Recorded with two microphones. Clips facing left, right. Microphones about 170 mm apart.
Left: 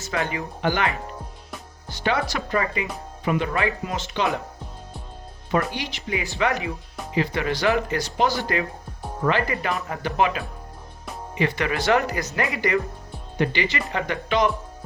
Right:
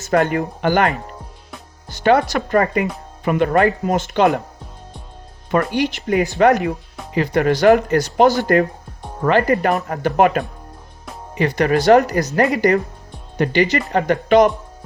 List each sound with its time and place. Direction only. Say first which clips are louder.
0.0 s speech: right 10 dB; 50° right (ahead or behind)
5.5 s speech: right 7 dB; 50° right (ahead or behind)
11.3 s speech: right 7 dB; 40° right (ahead or behind)